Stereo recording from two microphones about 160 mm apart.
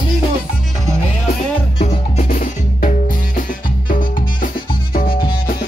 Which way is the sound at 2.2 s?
60° left (ahead or behind).